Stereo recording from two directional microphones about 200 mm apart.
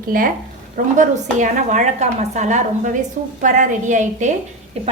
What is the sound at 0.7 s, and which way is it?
A woman's voice, 40° right (ahead or behind).